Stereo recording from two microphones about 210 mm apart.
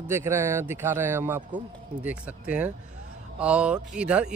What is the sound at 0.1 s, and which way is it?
A man's voice, 10° right (ahead or behind).